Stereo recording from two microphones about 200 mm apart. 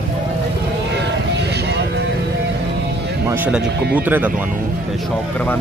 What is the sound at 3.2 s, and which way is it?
Speech, 5° right (ahead or behind).